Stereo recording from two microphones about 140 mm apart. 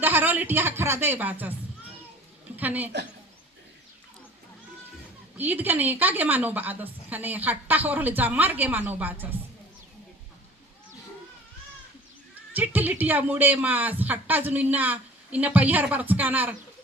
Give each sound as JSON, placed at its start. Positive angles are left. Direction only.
{"t": 0.0, "sound": "a woman's voice", "side_deg": -15}
{"t": 2.6, "sound": "a woman's voice", "side_deg": -10}
{"t": 5.4, "sound": "a woman's voice", "side_deg": -10}
{"t": 12.5, "sound": "a woman's voice", "side_deg": -15}